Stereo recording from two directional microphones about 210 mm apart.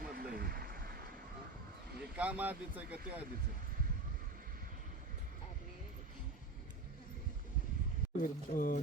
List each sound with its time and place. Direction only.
0.0 s a sound: 45° right (ahead or behind)
2.1 s speech: 5° right (ahead or behind)
8.2 s speech: 40° left (ahead or behind)